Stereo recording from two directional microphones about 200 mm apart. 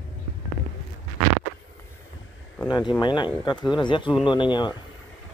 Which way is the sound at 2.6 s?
20° left (ahead or behind).